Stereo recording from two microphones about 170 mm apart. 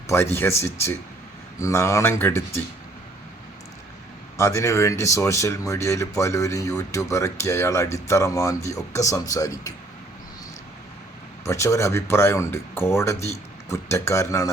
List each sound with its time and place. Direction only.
0.1 s speech: 15° left (ahead or behind)
4.4 s speech: 15° left (ahead or behind)
11.4 s speech: 15° left (ahead or behind)